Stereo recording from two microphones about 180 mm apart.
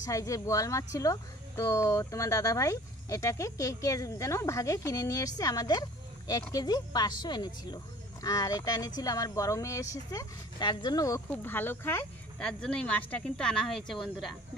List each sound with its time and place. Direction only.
0.0 s speech: 20° left (ahead or behind); by 14.3 s centre (ahead or behind)